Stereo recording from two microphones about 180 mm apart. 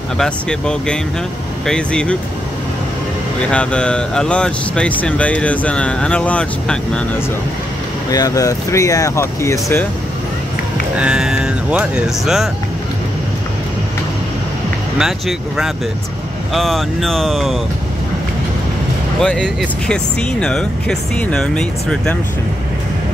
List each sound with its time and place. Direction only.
0.2 s speech: 5° left (ahead or behind)
3.3 s speech: 5° left (ahead or behind)
8.1 s speech: 20° left (ahead or behind)
11.0 s speech: 5° right (ahead or behind)
15.0 s speech: centre (ahead or behind)
19.1 s speech: 5° left (ahead or behind)